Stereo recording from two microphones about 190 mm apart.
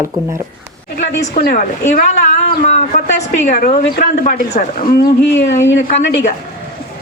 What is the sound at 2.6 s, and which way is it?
Speech, 40° left (ahead or behind).